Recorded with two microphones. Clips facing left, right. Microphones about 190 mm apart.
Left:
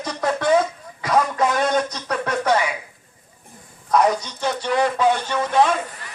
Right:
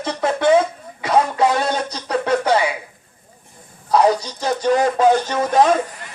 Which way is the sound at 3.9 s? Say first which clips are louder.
Right 3 dB; 30° right (ahead or behind).